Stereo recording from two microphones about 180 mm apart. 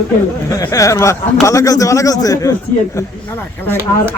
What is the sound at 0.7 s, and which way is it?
Speech, 15° left (ahead or behind).